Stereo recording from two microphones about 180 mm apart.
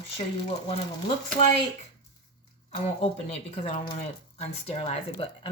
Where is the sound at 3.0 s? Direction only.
35° left (ahead or behind).